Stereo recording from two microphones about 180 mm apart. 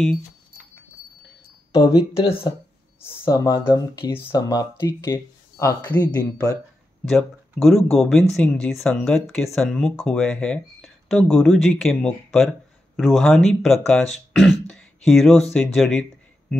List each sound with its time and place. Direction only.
1.7 s speech: 20° left (ahead or behind)
2.1 s speech: 30° left (ahead or behind)
3.0 s speech: 15° left (ahead or behind)
7.1 s speech: centre (ahead or behind)